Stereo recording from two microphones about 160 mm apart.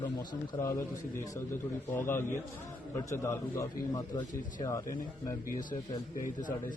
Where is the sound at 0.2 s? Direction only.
15° left (ahead or behind).